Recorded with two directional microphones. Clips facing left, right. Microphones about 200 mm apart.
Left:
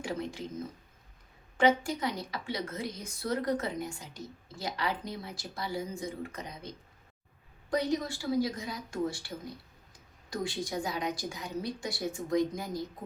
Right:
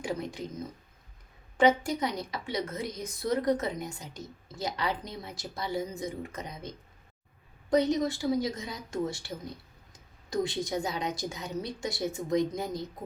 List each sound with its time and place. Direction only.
0.0 s speech: 15° right (ahead or behind)
1.5 s a woman's voice: 20° right (ahead or behind)